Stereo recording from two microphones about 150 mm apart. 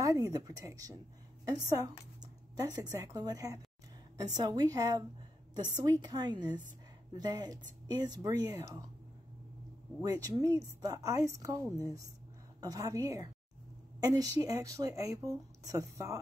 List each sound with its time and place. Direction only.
0.0 s speech: 25° right (ahead or behind)
10.0 s speech: 25° right (ahead or behind)